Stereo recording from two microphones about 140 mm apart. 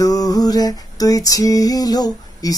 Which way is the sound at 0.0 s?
25° left (ahead or behind).